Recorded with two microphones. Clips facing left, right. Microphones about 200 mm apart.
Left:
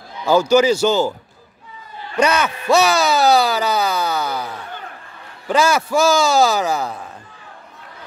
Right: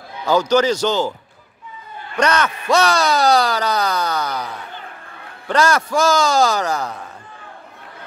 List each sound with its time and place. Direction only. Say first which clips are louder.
0.2 s speech: left 2 dB; 10° left (ahead or behind)
2.1 s speech: left 1 dB; 10° left (ahead or behind)
5.5 s speech: left 1 dB; 5° left (ahead or behind)